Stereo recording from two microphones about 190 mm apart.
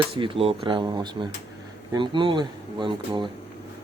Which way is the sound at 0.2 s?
30° right (ahead or behind).